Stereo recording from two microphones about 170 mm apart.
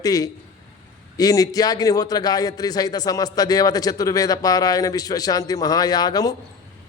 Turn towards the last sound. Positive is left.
turn(degrees=25)  # may be behind; listen again after turning